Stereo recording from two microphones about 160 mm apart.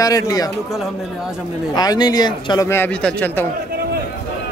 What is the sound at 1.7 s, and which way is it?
Speech, 25° left (ahead or behind).